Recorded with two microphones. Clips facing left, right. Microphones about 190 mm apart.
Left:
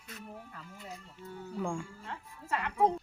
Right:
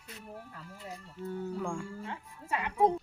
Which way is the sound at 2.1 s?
15° right (ahead or behind).